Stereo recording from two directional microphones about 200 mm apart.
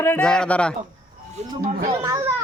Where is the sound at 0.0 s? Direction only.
10° left (ahead or behind).